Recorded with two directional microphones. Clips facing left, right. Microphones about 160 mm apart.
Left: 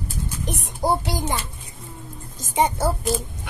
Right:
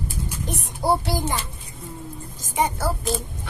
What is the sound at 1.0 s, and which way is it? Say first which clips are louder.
Speech: right 1 dB; 20° left (ahead or behind).